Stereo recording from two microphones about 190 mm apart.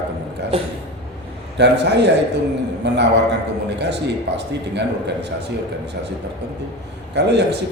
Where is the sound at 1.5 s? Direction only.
65° right (ahead or behind).